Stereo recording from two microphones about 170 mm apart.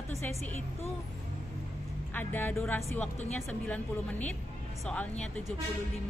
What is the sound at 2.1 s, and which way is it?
A woman's voice, 10° left (ahead or behind).